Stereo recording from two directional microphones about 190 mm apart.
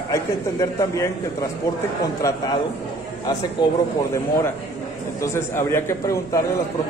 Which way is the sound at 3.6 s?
25° left (ahead or behind).